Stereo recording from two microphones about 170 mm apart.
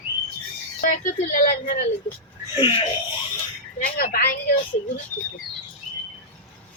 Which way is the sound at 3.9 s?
60° left (ahead or behind).